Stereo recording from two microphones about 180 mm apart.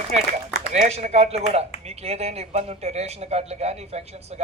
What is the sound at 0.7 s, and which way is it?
Speech, 40° right (ahead or behind).